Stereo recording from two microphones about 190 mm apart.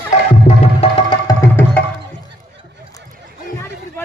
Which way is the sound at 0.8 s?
25° left (ahead or behind).